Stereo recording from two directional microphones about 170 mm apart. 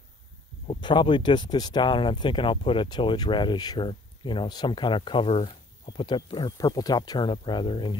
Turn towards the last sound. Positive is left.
turn(degrees=30)  # may be behind; listen again after turning